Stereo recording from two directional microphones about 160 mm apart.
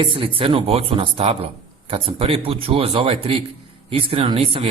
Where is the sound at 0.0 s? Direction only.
35° right (ahead or behind).